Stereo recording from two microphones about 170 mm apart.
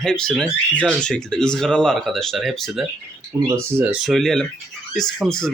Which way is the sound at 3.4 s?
15° right (ahead or behind).